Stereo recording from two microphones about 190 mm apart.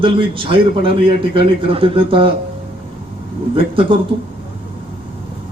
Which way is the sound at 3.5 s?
30° right (ahead or behind).